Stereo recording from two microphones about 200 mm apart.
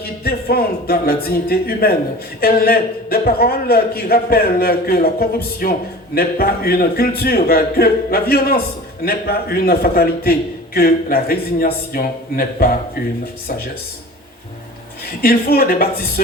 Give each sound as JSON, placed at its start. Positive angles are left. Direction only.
{"t": 0.0, "sound": "a man's voice", "side_deg": 50}
{"t": 15.2, "sound": "a man's voice", "side_deg": 50}